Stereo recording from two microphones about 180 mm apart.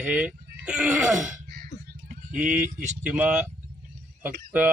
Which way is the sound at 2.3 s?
50° right (ahead or behind).